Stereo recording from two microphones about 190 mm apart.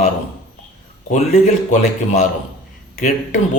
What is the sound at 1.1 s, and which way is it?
Speech, 40° left (ahead or behind).